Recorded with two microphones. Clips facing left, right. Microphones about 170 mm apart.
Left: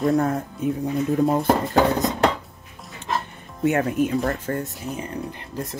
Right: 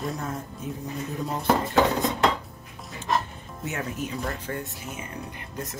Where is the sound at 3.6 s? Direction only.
60° left (ahead or behind); by 5.6 s 35° left (ahead or behind).